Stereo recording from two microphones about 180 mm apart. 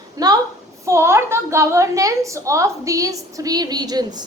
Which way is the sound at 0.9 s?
15° right (ahead or behind).